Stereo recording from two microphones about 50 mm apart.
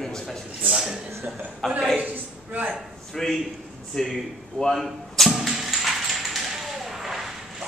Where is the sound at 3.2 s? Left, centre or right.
Centre.